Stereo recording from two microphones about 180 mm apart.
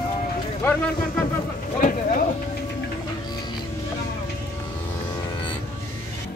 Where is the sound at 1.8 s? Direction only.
50° left (ahead or behind).